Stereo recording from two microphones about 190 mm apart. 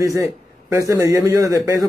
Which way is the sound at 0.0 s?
15° right (ahead or behind).